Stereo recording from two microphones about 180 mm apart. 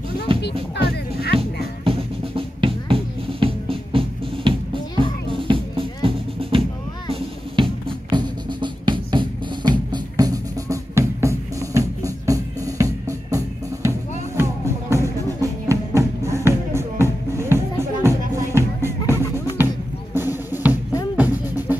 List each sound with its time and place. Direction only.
0.4 s music: 70° left (ahead or behind)
1.9 s music: 30° right (ahead or behind)
7.1 s drum: 30° right (ahead or behind)
13.8 s music: 15° right (ahead or behind)
20.2 s drum: 10° right (ahead or behind)
21.2 s music: 10° right (ahead or behind)